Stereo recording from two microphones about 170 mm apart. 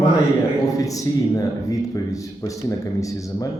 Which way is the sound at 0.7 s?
20° left (ahead or behind).